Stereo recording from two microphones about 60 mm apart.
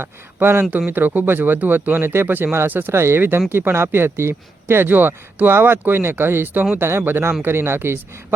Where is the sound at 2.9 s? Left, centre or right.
Right.